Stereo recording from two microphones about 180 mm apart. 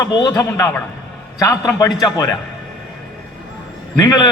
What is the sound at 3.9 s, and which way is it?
Speech, 25° left (ahead or behind).